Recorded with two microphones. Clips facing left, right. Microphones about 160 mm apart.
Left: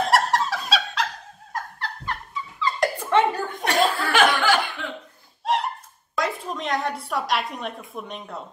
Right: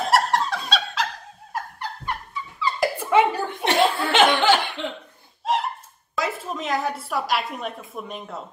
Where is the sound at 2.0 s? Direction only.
10° right (ahead or behind).